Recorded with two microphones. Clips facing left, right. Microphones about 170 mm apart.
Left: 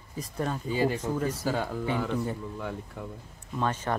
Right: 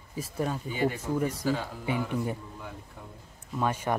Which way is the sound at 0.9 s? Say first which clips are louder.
Even; 10° right (ahead or behind).